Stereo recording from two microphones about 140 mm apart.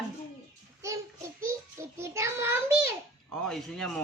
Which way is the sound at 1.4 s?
20° right (ahead or behind).